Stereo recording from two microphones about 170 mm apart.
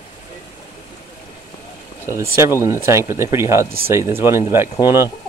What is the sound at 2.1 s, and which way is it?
Speech, 15° right (ahead or behind).